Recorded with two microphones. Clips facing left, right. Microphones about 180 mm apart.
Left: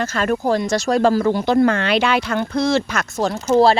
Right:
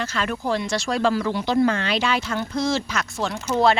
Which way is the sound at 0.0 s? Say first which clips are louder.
Left 6 dB; 45° left (ahead or behind).